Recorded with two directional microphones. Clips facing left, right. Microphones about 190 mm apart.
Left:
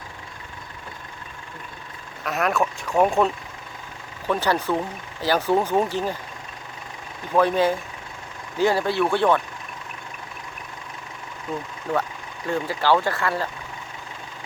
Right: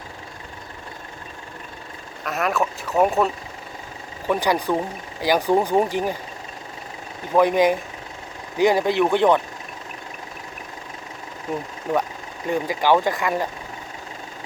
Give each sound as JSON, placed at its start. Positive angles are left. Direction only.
{"t": 2.2, "sound": "speech", "side_deg": 0}
{"t": 7.3, "sound": "speech", "side_deg": -15}
{"t": 11.5, "sound": "speech", "side_deg": -20}